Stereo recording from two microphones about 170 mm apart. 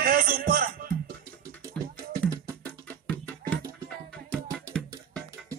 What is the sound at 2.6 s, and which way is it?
Music, 10° left (ahead or behind).